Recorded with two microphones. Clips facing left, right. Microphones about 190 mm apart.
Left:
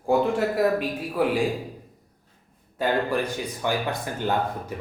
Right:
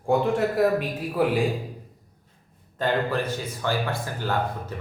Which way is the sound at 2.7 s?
10° left (ahead or behind).